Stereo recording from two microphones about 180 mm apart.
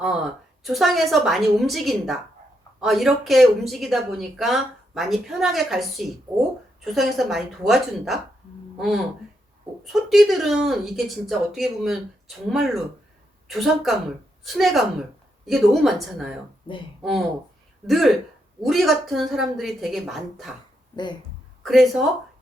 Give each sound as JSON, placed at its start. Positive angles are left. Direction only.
{"t": 0.6, "sound": "speech", "side_deg": 0}
{"t": 20.9, "sound": "speech", "side_deg": 25}
{"t": 21.6, "sound": "speech", "side_deg": 0}